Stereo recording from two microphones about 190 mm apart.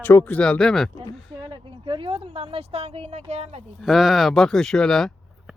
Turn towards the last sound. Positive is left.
turn(degrees=5)  # may be behind; listen again after turning